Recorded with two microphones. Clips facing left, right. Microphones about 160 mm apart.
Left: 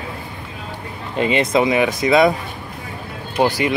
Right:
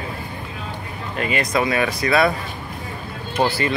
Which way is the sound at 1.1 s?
25° left (ahead or behind).